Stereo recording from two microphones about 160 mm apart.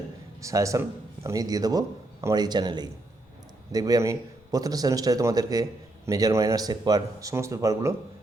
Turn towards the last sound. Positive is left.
turn(degrees=-20)  # may be behind; listen again after turning